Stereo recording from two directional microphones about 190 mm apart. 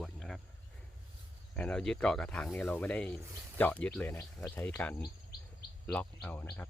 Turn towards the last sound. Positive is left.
turn(degrees=10)  # may be behind; listen again after turning